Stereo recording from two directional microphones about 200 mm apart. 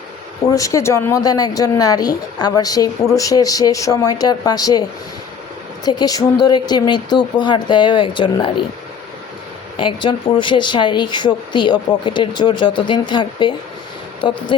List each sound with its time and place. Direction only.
0.5 s speech: 15° left (ahead or behind)
5.8 s speech: 20° left (ahead or behind)
9.7 s speech: 25° left (ahead or behind)